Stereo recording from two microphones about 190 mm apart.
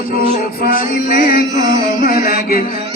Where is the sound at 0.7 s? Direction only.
45° left (ahead or behind).